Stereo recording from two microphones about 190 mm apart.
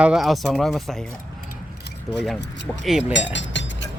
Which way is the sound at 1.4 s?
60° left (ahead or behind).